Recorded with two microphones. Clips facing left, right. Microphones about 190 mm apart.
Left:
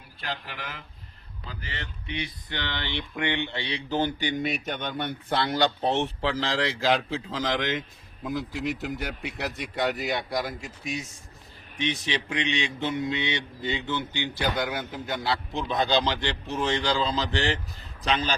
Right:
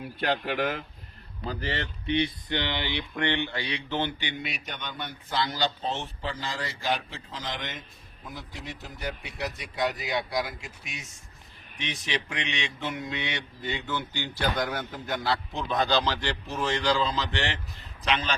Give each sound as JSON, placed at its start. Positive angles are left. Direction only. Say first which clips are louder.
{"t": 0.2, "sound": "speech", "louder": "right 9 dB", "side_deg": -50}
{"t": 2.0, "sound": "speech", "louder": "right 8 dB", "side_deg": -30}
{"t": 2.5, "sound": "speech", "louder": "right 3 dB", "side_deg": -15}
{"t": 3.2, "sound": "speech", "louder": "even", "side_deg": 15}
{"t": 11.8, "sound": "a man's voice", "louder": "left 4 dB", "side_deg": 30}